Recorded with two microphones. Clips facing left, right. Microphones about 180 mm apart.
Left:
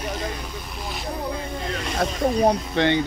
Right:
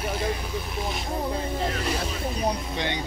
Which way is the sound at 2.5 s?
60° left (ahead or behind).